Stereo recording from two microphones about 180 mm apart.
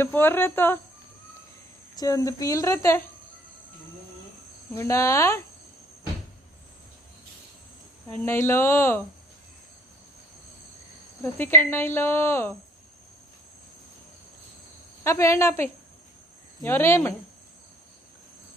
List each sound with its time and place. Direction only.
0.0 s speech: 10° left (ahead or behind)
2.0 s speech: 20° left (ahead or behind)
4.7 s speech: 15° left (ahead or behind)
8.1 s speech: 10° left (ahead or behind)
11.3 s speech: 10° left (ahead or behind)
15.0 s speech: 15° left (ahead or behind)